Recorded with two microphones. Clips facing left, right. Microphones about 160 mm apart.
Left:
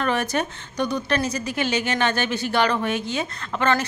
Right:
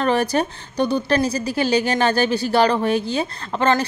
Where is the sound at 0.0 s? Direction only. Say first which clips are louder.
Right 4 dB; 35° right (ahead or behind).